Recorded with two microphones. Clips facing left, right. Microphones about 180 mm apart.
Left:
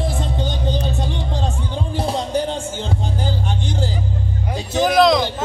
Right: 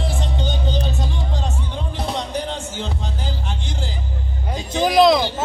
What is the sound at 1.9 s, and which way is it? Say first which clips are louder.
Music: left 4 dB; 30° left (ahead or behind).